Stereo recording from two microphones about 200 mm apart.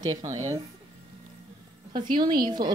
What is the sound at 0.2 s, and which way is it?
Speech, 35° right (ahead or behind).